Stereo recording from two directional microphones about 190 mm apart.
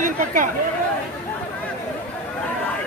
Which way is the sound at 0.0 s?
45° right (ahead or behind).